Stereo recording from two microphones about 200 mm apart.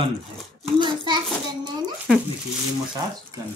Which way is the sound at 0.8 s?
25° right (ahead or behind).